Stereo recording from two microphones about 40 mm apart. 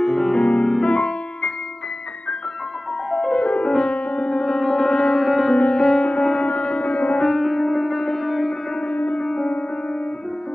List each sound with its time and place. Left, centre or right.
0.0 s music: centre
0.4 s music: left
3.1 s music: centre
3.3 s music: left
5.2 s music: centre
5.6 s music: left
7.2 s music: centre
9.2 s music: left